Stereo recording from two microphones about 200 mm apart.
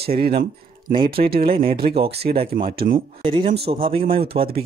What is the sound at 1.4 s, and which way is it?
Speech, 25° right (ahead or behind).